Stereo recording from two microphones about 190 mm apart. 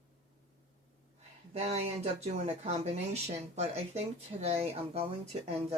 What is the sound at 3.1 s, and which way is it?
Speech, 35° right (ahead or behind).